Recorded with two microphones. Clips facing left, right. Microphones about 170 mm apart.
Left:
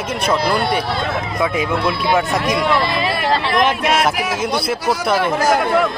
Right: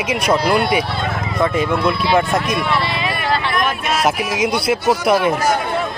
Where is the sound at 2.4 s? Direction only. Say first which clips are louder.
Left 2 dB; 45° left (ahead or behind).